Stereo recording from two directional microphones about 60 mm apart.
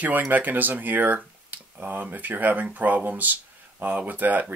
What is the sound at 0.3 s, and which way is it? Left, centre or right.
Speech, right.